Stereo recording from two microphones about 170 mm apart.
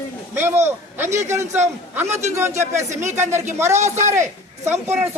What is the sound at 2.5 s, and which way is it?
Speech, 45° right (ahead or behind).